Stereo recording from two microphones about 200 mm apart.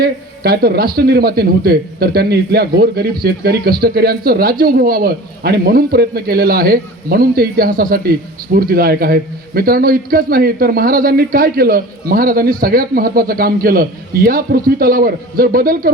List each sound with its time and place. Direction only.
0.0 s speech: 50° right (ahead or behind)